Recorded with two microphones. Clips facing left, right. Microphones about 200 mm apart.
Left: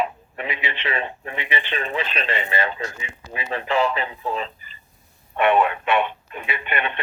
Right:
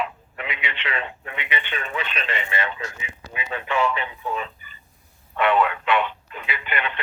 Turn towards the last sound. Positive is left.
turn(degrees=25)  # may be behind; listen again after turning